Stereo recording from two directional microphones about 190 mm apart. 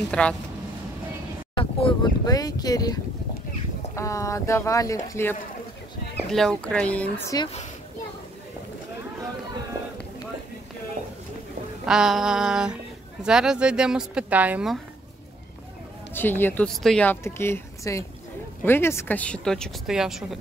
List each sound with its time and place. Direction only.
0.1 s speech: 5° left (ahead or behind)
1.5 s speech: 25° left (ahead or behind)
6.3 s speech: 5° left (ahead or behind)
11.8 s speech: 5° right (ahead or behind)
16.1 s speech: 10° left (ahead or behind)